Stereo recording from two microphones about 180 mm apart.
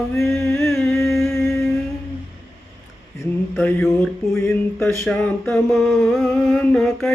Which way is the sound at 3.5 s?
5° left (ahead or behind).